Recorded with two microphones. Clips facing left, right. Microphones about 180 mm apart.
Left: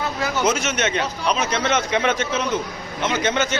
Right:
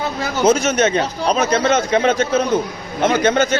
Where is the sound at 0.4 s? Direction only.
25° right (ahead or behind).